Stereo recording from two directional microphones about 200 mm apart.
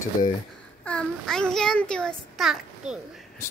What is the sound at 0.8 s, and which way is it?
A child's voice, 5° left (ahead or behind).